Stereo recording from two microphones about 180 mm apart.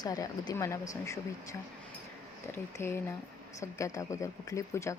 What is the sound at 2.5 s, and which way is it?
Speech, 15° left (ahead or behind).